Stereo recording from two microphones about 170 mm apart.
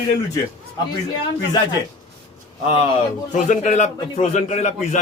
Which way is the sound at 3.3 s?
45° left (ahead or behind).